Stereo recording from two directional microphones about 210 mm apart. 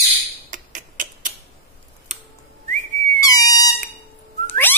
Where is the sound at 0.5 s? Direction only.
40° right (ahead or behind).